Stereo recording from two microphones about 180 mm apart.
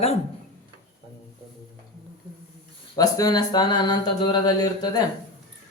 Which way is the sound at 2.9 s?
20° left (ahead or behind).